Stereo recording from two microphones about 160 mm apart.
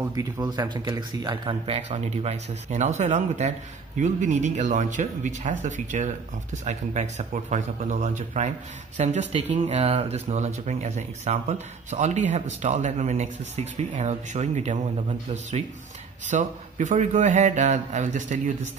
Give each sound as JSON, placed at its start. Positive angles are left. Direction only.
{"t": 0.1, "sound": "speech", "side_deg": -25}
{"t": 1.9, "sound": "speech", "side_deg": -45}
{"t": 16.3, "sound": "speech", "side_deg": -50}